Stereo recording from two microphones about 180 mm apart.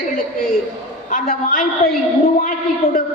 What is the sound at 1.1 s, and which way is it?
Speech, 50° left (ahead or behind).